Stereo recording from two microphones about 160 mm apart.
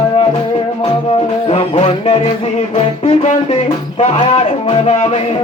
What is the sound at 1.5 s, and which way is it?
Music, 40° left (ahead or behind).